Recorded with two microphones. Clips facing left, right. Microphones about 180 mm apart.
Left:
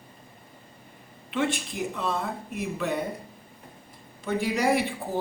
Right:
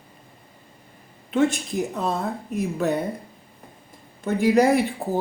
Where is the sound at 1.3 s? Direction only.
40° right (ahead or behind).